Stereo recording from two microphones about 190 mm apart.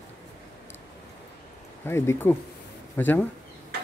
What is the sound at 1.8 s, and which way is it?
Speech, 10° left (ahead or behind).